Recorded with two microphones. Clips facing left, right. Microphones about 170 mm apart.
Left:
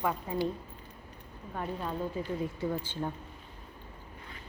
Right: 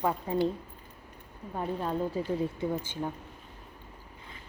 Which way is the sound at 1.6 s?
30° right (ahead or behind).